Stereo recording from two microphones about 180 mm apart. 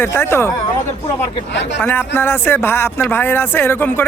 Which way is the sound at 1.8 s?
10° left (ahead or behind).